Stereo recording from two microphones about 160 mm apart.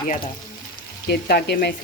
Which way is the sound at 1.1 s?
90° left.